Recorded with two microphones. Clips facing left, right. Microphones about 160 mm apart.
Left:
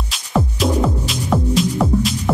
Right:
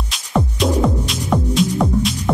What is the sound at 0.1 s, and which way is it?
Music, centre (ahead or behind).